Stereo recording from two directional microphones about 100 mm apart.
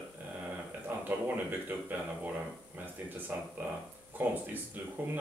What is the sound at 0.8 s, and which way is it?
A man's voice, 20° right (ahead or behind).